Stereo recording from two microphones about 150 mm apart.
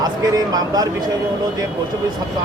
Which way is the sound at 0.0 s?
25° right (ahead or behind).